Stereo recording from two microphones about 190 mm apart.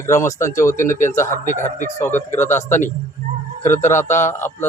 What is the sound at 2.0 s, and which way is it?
Speech, 10° left (ahead or behind).